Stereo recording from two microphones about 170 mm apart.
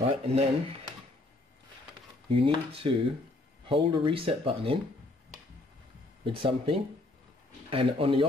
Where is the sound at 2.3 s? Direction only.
30° right (ahead or behind).